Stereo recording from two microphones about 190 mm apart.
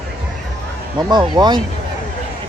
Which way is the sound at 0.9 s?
20° right (ahead or behind).